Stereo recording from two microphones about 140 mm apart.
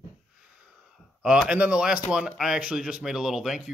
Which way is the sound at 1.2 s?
5° right (ahead or behind).